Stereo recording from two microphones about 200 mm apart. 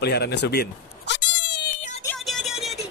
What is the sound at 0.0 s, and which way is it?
Cat, 55° left (ahead or behind).